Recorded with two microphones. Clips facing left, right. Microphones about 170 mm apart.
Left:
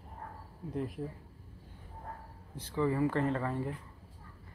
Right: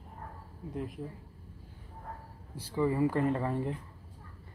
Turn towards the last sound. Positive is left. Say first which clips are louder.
# right 2 dB
turn(degrees=-20)  # may be behind; listen again after turning